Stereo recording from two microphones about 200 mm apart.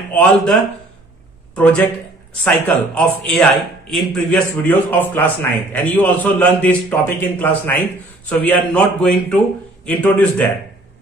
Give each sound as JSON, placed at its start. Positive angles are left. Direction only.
{"t": 0.1, "sound": "a man's voice", "side_deg": 5}